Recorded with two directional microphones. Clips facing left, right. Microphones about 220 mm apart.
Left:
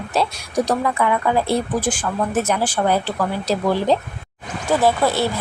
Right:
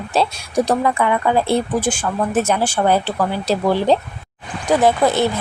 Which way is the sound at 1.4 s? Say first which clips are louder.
Right 2 dB; 25° right (ahead or behind).